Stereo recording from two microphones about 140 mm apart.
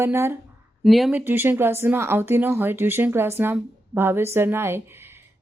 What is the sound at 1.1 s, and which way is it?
Speech, 15° right (ahead or behind).